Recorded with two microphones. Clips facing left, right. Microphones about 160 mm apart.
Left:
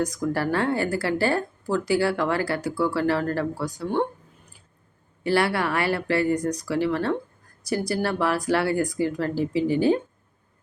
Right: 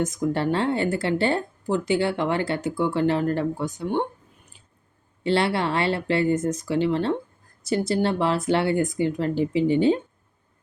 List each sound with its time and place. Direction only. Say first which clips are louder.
0.0 s speech: right 1 dB; 20° right (ahead or behind)
5.2 s speech: even; 25° right (ahead or behind)